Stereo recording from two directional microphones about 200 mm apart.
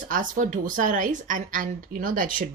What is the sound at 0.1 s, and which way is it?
A woman's voice, 40° right (ahead or behind).